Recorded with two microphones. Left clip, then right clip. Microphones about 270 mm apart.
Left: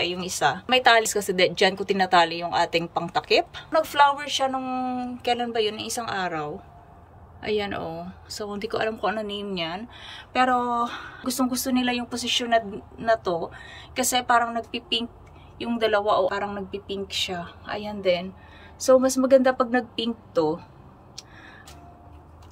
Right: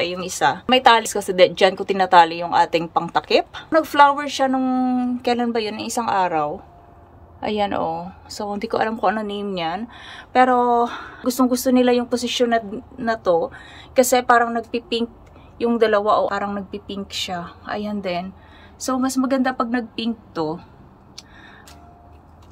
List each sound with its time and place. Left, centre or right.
0.0 s a woman's voice: centre